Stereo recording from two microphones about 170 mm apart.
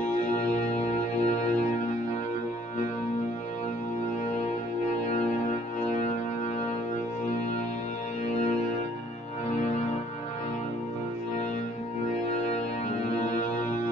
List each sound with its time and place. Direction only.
0.7 s music: 40° left (ahead or behind)